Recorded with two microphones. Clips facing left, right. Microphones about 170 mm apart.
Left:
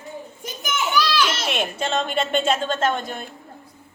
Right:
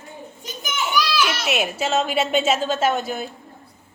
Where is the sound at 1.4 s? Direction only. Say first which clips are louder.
Right 2 dB; 5° right (ahead or behind).